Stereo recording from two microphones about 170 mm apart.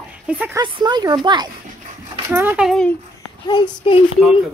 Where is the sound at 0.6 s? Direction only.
25° right (ahead or behind).